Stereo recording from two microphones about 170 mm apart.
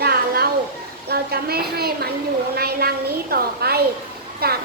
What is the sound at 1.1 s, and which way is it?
A child's voice, 65° right (ahead or behind).